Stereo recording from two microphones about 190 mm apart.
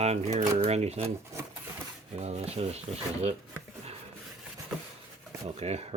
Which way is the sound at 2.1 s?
35° right (ahead or behind).